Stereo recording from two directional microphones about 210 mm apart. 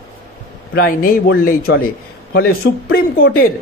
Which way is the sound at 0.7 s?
45° left (ahead or behind).